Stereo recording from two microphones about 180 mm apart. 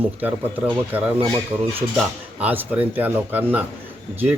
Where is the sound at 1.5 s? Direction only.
30° right (ahead or behind).